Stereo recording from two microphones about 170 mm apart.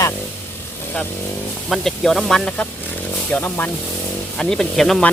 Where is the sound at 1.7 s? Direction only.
Centre (ahead or behind).